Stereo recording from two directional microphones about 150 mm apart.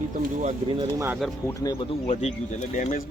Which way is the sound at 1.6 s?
25° left (ahead or behind).